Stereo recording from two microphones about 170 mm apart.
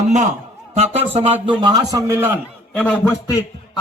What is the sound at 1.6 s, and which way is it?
Speech, 20° right (ahead or behind).